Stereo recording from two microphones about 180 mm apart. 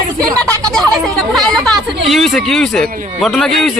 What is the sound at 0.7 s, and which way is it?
A man's voice, 5° left (ahead or behind).